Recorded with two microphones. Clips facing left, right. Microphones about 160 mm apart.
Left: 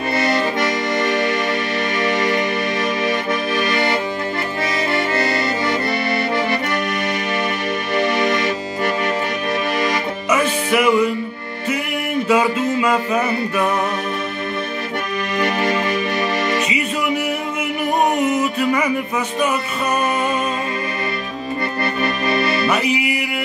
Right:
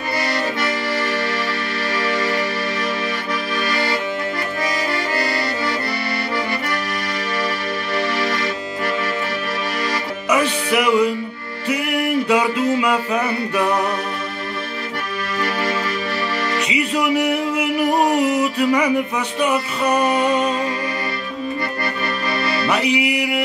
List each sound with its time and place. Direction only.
0.2 s accordion: 20° left (ahead or behind)
2.0 s music: 20° left (ahead or behind)
3.5 s music: 20° left (ahead or behind)
4.9 s accordion: 25° left (ahead or behind)
7.9 s music: 20° left (ahead or behind)
10.7 s music: 15° right (ahead or behind)
12.3 s music: 15° right (ahead or behind)
15.3 s music: 20° left (ahead or behind)
16.7 s music: 15° right (ahead or behind)
19.4 s music: 15° right (ahead or behind)
22.0 s music: 20° left (ahead or behind)
22.8 s music: 75° right (ahead or behind)